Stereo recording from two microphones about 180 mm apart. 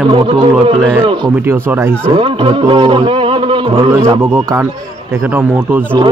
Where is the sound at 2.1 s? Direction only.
30° right (ahead or behind).